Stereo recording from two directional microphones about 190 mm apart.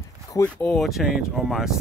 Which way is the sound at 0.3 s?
10° left (ahead or behind).